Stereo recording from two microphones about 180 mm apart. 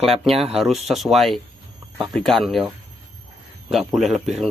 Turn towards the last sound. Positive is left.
turn(degrees=0)  # may be behind; listen again after turning